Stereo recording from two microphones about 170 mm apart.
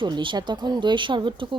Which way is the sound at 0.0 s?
30° right (ahead or behind).